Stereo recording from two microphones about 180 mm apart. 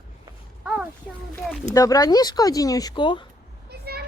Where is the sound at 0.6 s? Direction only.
5° right (ahead or behind).